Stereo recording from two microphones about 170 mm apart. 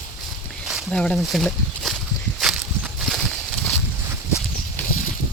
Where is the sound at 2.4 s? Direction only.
5° right (ahead or behind).